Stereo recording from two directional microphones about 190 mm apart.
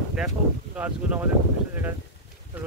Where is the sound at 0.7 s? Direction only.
10° right (ahead or behind).